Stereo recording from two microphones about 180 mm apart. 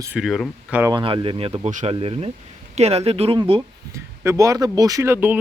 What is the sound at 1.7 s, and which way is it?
Speech, 45° right (ahead or behind).